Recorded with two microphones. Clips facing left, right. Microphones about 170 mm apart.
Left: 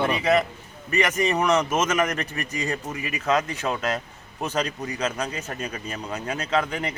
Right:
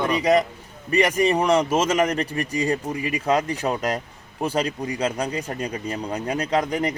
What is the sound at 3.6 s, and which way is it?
Speech, 20° right (ahead or behind).